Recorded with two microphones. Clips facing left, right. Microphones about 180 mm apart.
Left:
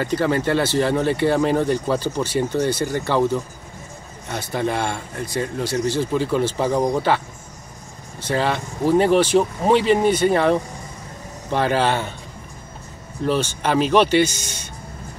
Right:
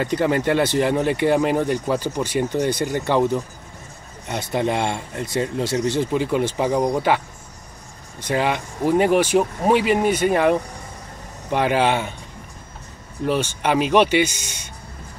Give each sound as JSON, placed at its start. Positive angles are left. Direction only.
{"t": 0.0, "sound": "speech", "side_deg": -20}
{"t": 4.3, "sound": "speech", "side_deg": -20}
{"t": 8.2, "sound": "speech", "side_deg": -15}
{"t": 13.2, "sound": "speech", "side_deg": -10}